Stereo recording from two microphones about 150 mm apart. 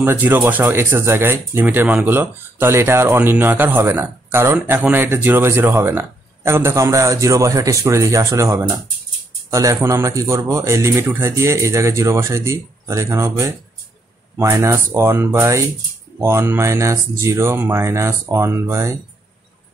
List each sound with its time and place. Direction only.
0.0 s speech: 15° right (ahead or behind)